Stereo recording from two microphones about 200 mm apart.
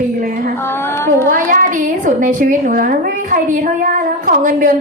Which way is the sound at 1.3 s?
45° right (ahead or behind).